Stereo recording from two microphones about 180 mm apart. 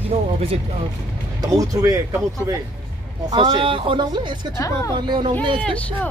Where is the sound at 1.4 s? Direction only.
20° right (ahead or behind).